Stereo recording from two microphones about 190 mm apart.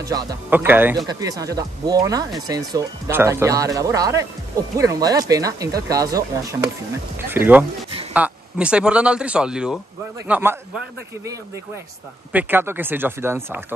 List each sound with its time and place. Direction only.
0.0 s speech: 20° right (ahead or behind)
0.5 s speech: 10° right (ahead or behind)
12.3 s speech: 10° right (ahead or behind)